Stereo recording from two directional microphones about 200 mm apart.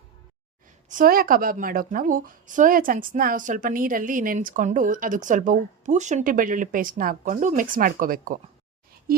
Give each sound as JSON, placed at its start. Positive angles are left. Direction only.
{"t": 0.9, "sound": "a woman's voice", "side_deg": -45}